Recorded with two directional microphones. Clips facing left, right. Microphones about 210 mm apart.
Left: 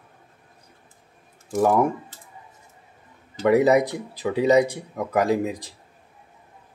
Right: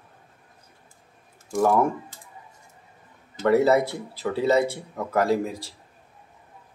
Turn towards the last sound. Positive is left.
turn(degrees=15)  # may be behind; listen again after turning